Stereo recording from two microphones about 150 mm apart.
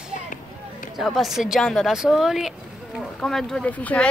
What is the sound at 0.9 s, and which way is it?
Speech, centre (ahead or behind).